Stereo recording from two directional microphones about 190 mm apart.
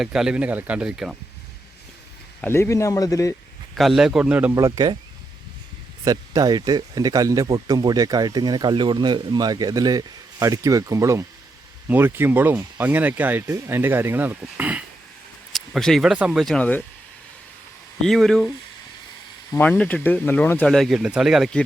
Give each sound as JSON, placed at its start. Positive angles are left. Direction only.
{"t": 0.0, "sound": "speech", "side_deg": -5}
{"t": 2.4, "sound": "speech", "side_deg": 15}
{"t": 3.8, "sound": "speech", "side_deg": 0}
{"t": 4.5, "sound": "speech", "side_deg": -20}
{"t": 6.1, "sound": "speech", "side_deg": -20}
{"t": 18.0, "sound": "speech", "side_deg": 0}
{"t": 19.5, "sound": "speech", "side_deg": 10}